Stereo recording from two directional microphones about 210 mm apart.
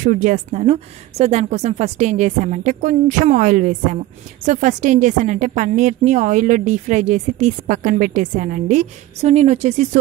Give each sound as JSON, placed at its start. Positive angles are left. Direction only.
{"t": 0.0, "sound": "a woman's voice", "side_deg": -40}